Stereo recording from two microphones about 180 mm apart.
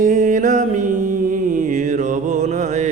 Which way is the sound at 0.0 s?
45° right (ahead or behind).